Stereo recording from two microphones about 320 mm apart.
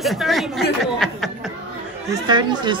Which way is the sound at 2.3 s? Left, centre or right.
Centre.